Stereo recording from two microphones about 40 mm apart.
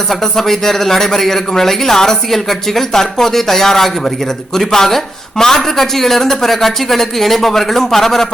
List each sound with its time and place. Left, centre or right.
0.1 s a man's voice: centre